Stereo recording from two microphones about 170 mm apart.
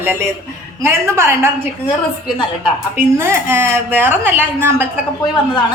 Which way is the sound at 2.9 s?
15° right (ahead or behind).